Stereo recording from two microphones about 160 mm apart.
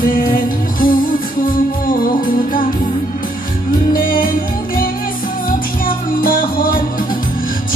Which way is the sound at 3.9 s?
60° left (ahead or behind).